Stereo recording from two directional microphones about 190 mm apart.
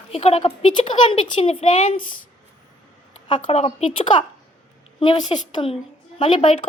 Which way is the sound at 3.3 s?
35° left (ahead or behind).